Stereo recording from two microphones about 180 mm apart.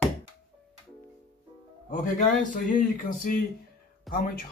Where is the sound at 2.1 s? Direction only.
45° left (ahead or behind).